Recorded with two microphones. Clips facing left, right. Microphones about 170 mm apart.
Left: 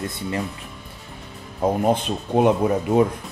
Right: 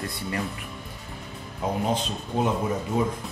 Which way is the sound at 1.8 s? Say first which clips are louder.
Left 6 dB; 60° left (ahead or behind).